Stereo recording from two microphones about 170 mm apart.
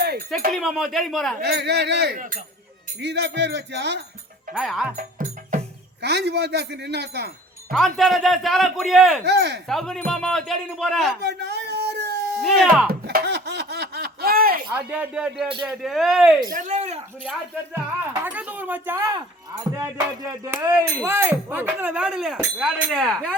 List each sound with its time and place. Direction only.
0.5 s speech: centre (ahead or behind)
1.5 s speech: 80° right
2.1 s speech: 50° right (ahead or behind)
3.0 s music: 85° right
4.5 s speech: centre (ahead or behind)
5.5 s speech: 70° right (ahead or behind)
7.7 s speech: centre (ahead or behind)
9.2 s speech: 85° right
9.6 s speech: centre (ahead or behind)
11.2 s a sound: 80° right; by 14.6 s 60° right (ahead or behind)
14.7 s speech: 10° right (ahead or behind)
16.5 s speech: 45° right (ahead or behind)
18.2 s speech: 10° right (ahead or behind)